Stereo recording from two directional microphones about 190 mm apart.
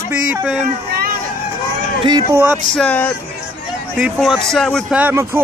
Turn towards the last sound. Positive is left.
turn(degrees=-10)  # may be behind; listen again after turning